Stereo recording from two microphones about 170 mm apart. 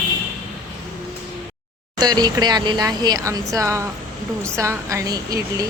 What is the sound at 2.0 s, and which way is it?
Speech, 25° right (ahead or behind).